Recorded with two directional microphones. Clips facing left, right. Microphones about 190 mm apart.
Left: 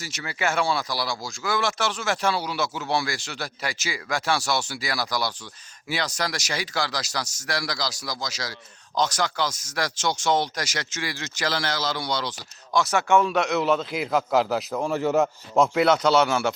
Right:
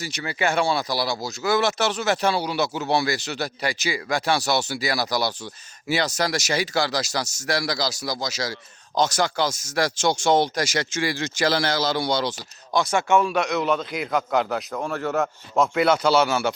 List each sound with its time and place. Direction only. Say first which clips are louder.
0.2 s speech: right 3 dB; 25° right (ahead or behind)
3.7 s a man's voice: right 6 dB; centre (ahead or behind)
4.1 s speech: right 2 dB; 20° right (ahead or behind)
13.0 s speech: even; 15° right (ahead or behind)
13.3 s a man's voice: even; centre (ahead or behind)